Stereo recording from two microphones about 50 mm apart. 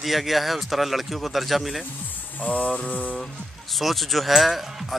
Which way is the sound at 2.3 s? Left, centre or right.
Left.